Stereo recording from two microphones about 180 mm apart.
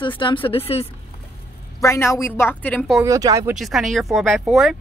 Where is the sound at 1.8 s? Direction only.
15° left (ahead or behind).